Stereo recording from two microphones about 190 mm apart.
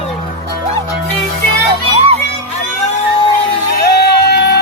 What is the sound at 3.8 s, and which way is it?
Music, 60° left (ahead or behind).